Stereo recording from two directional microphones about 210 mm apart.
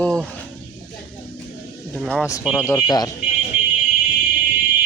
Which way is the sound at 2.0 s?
Centre (ahead or behind).